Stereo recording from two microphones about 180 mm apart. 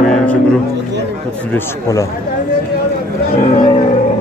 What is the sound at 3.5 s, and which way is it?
Roaring cats, 30° left (ahead or behind).